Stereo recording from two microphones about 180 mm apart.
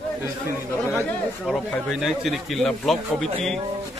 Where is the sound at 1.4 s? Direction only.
Centre (ahead or behind).